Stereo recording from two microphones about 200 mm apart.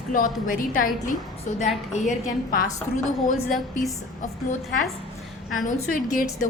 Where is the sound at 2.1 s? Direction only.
40° left (ahead or behind).